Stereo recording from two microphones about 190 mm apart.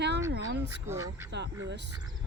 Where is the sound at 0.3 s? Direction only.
65° right (ahead or behind).